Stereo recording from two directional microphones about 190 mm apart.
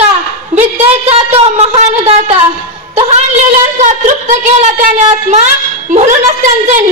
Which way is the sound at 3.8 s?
40° right (ahead or behind).